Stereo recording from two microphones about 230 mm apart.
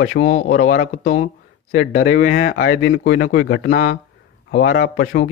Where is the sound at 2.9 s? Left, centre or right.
Left.